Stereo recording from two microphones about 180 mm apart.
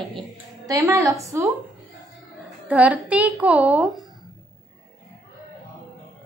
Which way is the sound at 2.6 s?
10° right (ahead or behind).